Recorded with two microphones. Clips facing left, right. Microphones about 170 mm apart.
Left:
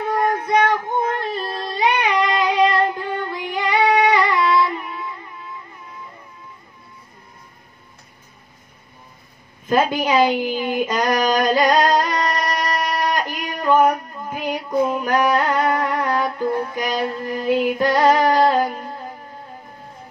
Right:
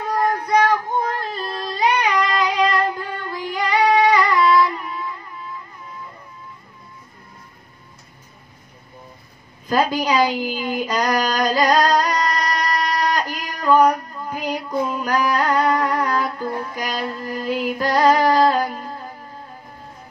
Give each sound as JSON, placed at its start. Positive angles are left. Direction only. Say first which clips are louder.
{"t": 0.3, "sound": "child singing", "louder": "right 2 dB", "side_deg": 20}
{"t": 9.7, "sound": "a sound", "louder": "left 1 dB", "side_deg": 20}
{"t": 13.8, "sound": "female singing", "louder": "even", "side_deg": 20}
{"t": 15.0, "sound": "music", "louder": "left 2 dB", "side_deg": 20}